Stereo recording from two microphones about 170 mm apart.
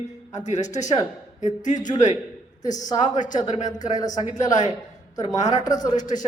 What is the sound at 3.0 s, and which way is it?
A man's voice, 45° left (ahead or behind).